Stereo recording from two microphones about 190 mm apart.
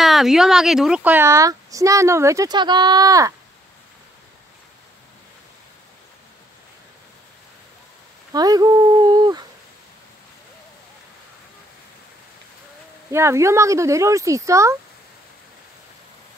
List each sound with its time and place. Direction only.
0.0 s a woman's voice: centre (ahead or behind); by 3.3 s 20° right (ahead or behind)
8.3 s speech: 20° right (ahead or behind)
13.1 s a woman's voice: 15° right (ahead or behind)